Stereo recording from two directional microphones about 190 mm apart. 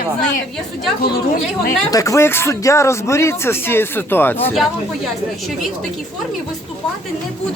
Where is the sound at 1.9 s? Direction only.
15° left (ahead or behind).